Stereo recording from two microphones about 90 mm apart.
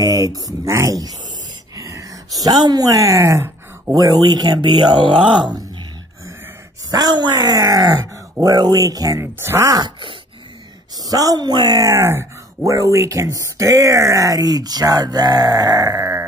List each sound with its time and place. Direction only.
0.0 s speech: 40° right (ahead or behind)
1.8 s a sound: 35° right (ahead or behind)
3.9 s speech: 45° right (ahead or behind)
4.6 s speech: 55° right (ahead or behind)
6.9 s speech: 50° right (ahead or behind)
9.2 s speech: 25° right (ahead or behind)
9.7 s wail: 55° right (ahead or behind)
11.1 s speech: 45° right (ahead or behind)
11.9 s speech: 30° right (ahead or behind)